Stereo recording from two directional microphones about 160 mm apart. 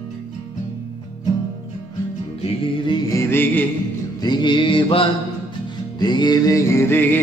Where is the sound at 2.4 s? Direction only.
30° left (ahead or behind).